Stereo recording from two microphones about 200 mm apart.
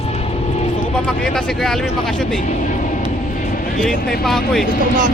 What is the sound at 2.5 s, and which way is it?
Speech, 40° left (ahead or behind).